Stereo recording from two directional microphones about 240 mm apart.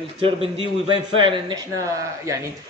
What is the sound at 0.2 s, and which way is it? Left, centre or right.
A man's voice, right.